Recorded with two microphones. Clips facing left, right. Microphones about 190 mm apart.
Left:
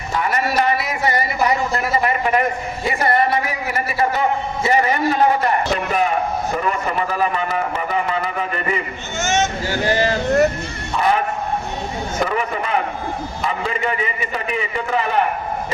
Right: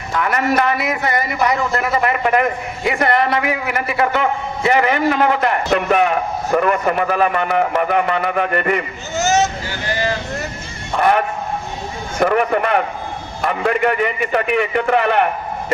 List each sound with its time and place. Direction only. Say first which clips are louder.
0.1 s a man's voice: right 3 dB; 60° right (ahead or behind)
9.1 s speech: right 4 dB; 35° right (ahead or behind)
9.6 s speech: left 4 dB; 45° left (ahead or behind)
10.9 s a man's voice: right 3 dB; 60° right (ahead or behind)
12.2 s a man's voice: right 8 dB; 60° right (ahead or behind)